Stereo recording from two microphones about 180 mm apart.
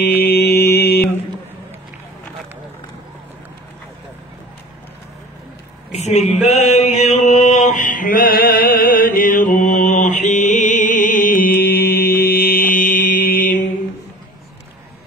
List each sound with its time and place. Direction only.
0.0 s mantra: 60° left (ahead or behind)
5.9 s mantra: 35° left (ahead or behind)